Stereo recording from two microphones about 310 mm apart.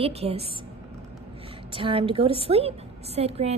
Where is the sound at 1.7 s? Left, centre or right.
Centre.